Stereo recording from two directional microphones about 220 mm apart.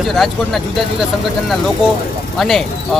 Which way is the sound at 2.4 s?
Centre (ahead or behind).